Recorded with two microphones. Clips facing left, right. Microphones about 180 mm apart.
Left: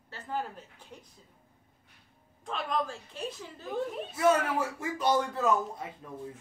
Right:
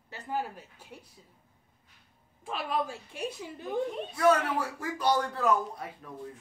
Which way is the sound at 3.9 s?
5° left (ahead or behind).